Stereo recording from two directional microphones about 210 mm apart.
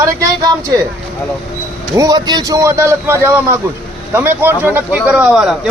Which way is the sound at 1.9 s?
15° right (ahead or behind).